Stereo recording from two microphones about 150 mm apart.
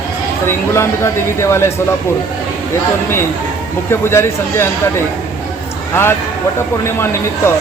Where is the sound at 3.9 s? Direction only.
15° left (ahead or behind).